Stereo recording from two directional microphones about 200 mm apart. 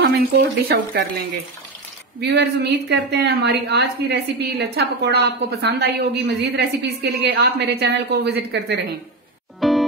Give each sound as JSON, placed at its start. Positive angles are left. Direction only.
{"t": 0.0, "sound": "speech", "side_deg": -55}
{"t": 2.1, "sound": "a woman's voice", "side_deg": -55}
{"t": 9.6, "sound": "music", "side_deg": 0}